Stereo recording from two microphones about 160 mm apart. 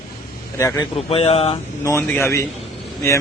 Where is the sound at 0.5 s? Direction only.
20° left (ahead or behind).